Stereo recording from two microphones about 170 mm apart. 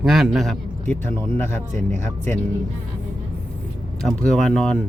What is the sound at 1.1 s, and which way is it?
Speech, 15° left (ahead or behind).